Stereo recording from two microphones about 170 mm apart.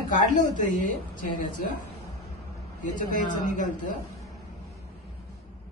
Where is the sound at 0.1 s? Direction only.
50° left (ahead or behind).